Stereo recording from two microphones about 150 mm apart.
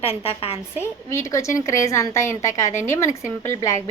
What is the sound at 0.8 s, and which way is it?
A woman's voice, 20° left (ahead or behind).